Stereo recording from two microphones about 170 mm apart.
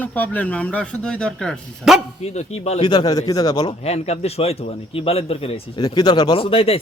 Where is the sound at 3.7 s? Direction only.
40° left (ahead or behind).